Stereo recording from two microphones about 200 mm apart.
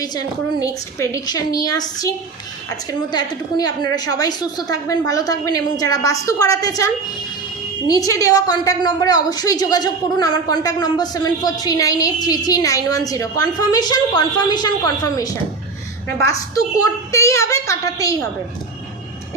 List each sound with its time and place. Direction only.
0.0 s a woman's voice: 20° left (ahead or behind)